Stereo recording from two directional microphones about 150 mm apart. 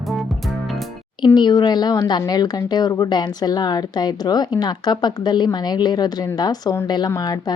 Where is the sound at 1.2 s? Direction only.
30° left (ahead or behind).